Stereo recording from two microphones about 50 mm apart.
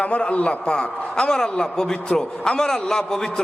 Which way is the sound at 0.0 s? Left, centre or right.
Left.